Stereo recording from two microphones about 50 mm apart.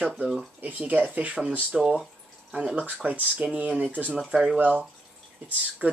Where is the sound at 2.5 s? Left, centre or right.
Centre.